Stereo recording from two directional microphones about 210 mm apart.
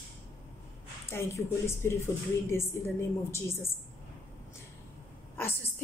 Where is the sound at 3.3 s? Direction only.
10° left (ahead or behind).